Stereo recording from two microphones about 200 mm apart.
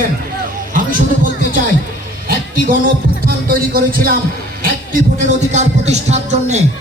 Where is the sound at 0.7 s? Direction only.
45° right (ahead or behind).